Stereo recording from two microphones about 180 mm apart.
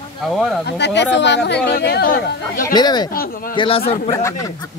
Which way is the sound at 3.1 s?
55° left (ahead or behind).